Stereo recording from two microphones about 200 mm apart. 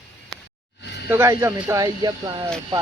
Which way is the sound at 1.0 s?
10° right (ahead or behind).